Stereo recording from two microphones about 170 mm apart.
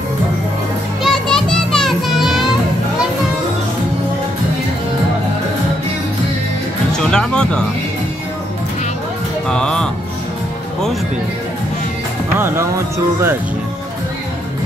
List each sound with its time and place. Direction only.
1.0 s music: 5° left (ahead or behind)
7.0 s music: 5° left (ahead or behind)
9.5 s music: 5° left (ahead or behind)
12.4 s speech: 15° right (ahead or behind)